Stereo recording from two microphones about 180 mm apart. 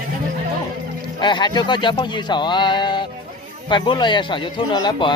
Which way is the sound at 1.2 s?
25° left (ahead or behind).